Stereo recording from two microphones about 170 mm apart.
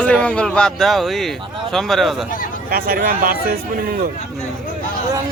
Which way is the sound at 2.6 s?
60° right (ahead or behind).